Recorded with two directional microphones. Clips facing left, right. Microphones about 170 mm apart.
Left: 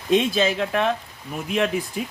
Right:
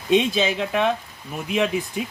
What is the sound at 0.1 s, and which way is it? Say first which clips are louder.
Speech: even; centre (ahead or behind).